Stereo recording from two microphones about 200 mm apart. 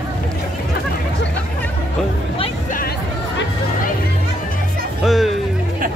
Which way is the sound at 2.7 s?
45° left (ahead or behind).